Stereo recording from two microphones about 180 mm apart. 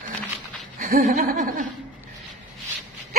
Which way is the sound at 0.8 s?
55° right (ahead or behind).